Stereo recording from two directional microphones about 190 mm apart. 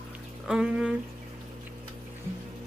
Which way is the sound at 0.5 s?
5° right (ahead or behind).